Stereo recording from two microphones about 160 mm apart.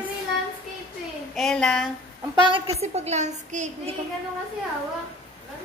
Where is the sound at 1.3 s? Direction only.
5° left (ahead or behind).